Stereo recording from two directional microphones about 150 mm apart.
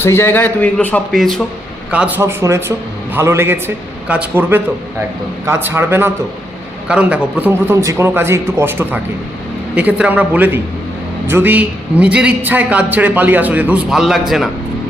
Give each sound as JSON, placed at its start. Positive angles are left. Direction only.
{"t": 0.0, "sound": "speech", "side_deg": 15}
{"t": 1.9, "sound": "a man's voice", "side_deg": -10}